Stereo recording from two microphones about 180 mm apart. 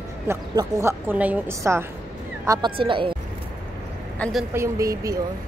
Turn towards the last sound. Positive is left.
turn(degrees=-20)  # may be behind; listen again after turning